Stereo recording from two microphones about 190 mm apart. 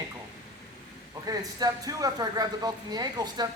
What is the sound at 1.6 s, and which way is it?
A woman's voice, 20° right (ahead or behind).